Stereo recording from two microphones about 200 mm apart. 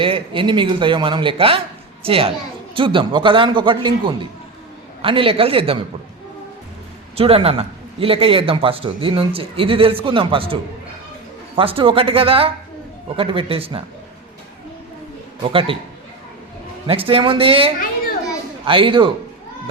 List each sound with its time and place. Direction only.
0.0 s a man's voice: 25° right (ahead or behind)
7.2 s a man's voice: 30° right (ahead or behind)
15.4 s a man's voice: 25° right (ahead or behind)
16.8 s a man's voice: 25° right (ahead or behind)